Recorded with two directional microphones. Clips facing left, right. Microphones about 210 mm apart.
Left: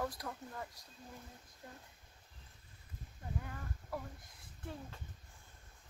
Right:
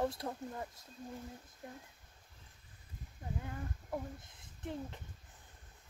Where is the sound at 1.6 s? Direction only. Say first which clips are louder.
Right 4 dB; 20° right (ahead or behind).